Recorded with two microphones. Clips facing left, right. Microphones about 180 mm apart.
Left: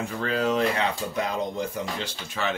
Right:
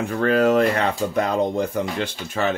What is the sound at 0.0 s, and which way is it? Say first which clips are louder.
Speech: right 8 dB; 60° right (ahead or behind).